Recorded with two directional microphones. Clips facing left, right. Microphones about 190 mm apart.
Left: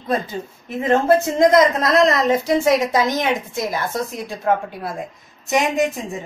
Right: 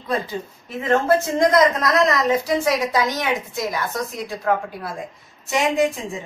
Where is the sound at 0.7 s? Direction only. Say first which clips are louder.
Left 2 dB; 20° left (ahead or behind).